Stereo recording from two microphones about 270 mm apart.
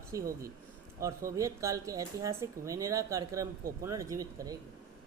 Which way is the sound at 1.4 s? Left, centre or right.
Centre.